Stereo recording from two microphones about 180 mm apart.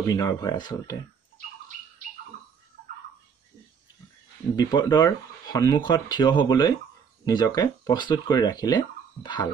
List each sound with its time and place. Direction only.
0.1 s speech: 20° left (ahead or behind)
4.6 s speech: 25° left (ahead or behind)